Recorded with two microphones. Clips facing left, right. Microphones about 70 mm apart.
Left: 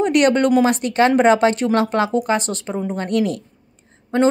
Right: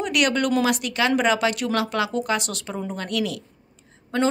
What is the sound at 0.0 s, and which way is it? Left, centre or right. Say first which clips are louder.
A woman's voice: left 7 dB; left.